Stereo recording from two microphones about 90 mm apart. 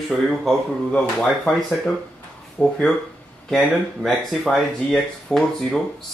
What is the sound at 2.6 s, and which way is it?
Speech, 15° left (ahead or behind).